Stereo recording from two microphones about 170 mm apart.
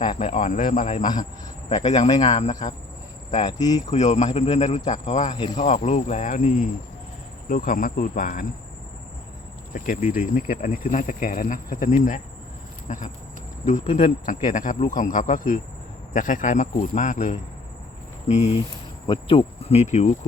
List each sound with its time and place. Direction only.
0.0 s cricket: 30° left (ahead or behind)
0.3 s speech: 50° left (ahead or behind)
3.4 s speech: 25° left (ahead or behind)
3.8 s speech: 45° left (ahead or behind)
9.7 s speech: 50° left (ahead or behind)
18.3 s cricket: 40° left (ahead or behind)
19.0 s cricket: 30° left (ahead or behind)